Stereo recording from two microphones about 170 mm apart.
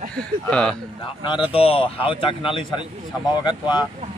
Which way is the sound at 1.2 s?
30° left (ahead or behind).